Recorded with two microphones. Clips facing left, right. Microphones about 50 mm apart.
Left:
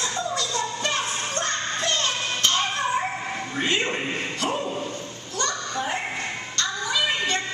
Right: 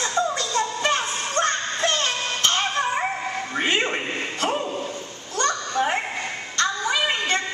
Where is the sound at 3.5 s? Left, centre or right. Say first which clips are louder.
Right 2 dB; centre.